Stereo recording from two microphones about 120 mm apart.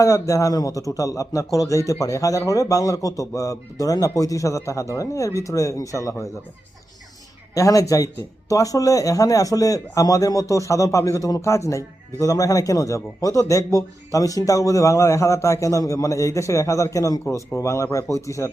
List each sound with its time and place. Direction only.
0.0 s speech: 25° left (ahead or behind)
7.5 s speech: 30° left (ahead or behind)